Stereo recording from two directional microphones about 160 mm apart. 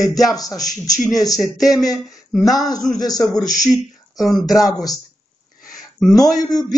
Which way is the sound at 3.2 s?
25° left (ahead or behind).